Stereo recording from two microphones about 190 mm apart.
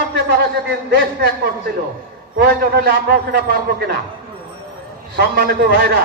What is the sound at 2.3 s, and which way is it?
A man's voice, 55° right (ahead or behind).